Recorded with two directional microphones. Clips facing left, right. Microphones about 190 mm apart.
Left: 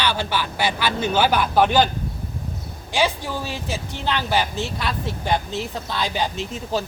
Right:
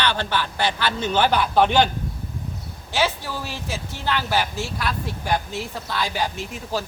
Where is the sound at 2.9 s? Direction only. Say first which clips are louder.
Left 2 dB; 15° left (ahead or behind).